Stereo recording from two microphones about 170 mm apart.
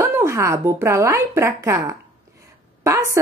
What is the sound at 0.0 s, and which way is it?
A woman's voice, 15° right (ahead or behind).